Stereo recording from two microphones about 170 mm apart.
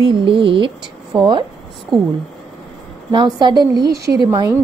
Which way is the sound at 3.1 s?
25° right (ahead or behind).